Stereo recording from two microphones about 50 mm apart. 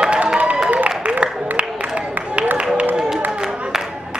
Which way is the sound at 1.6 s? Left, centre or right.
Right.